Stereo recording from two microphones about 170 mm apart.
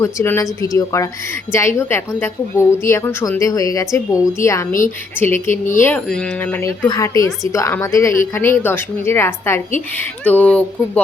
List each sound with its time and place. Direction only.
0.0 s a woman's voice: 15° left (ahead or behind)